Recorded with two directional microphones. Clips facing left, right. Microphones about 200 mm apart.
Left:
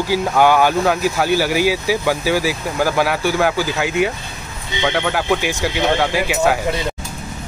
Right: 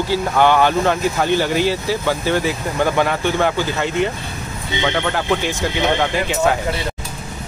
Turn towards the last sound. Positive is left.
turn(degrees=5)  # may be behind; listen again after turning